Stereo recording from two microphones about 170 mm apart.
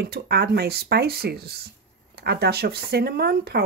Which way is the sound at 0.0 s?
65° right (ahead or behind).